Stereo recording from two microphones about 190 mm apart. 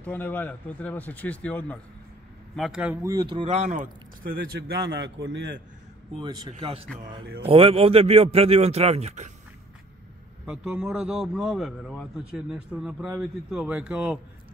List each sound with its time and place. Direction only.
0.0 s speech: 10° left (ahead or behind); by 3.4 s 25° right (ahead or behind)
3.4 s a man's voice: 40° right (ahead or behind); by 5.6 s 75° right (ahead or behind)
6.2 s a man's voice: 20° right (ahead or behind)
10.4 s a man's voice: 5° right (ahead or behind)